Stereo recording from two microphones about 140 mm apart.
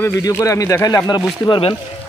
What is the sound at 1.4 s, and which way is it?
Speech, 40° left (ahead or behind).